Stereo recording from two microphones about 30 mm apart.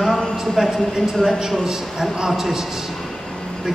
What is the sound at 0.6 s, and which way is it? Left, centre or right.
Speech, centre.